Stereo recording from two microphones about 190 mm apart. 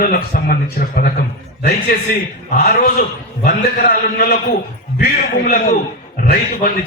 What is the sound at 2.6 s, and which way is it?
A man's voice, 55° left (ahead or behind).